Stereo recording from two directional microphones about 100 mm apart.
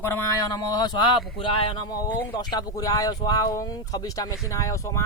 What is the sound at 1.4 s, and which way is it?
Speech, 65° left (ahead or behind).